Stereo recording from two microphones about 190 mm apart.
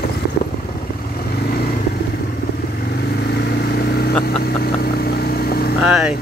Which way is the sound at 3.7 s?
55° left (ahead or behind).